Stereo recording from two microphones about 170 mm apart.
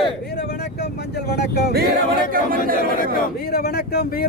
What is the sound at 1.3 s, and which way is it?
Speech, 70° left (ahead or behind).